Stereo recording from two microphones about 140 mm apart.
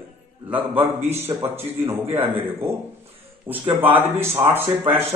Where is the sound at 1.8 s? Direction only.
15° right (ahead or behind).